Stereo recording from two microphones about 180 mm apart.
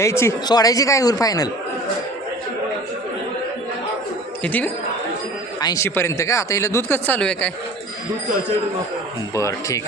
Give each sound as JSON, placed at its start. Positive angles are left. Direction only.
{"t": 0.0, "sound": "speech", "side_deg": 15}
{"t": 4.4, "sound": "speech", "side_deg": 10}
{"t": 5.5, "sound": "speech", "side_deg": 20}
{"t": 9.3, "sound": "speech", "side_deg": 15}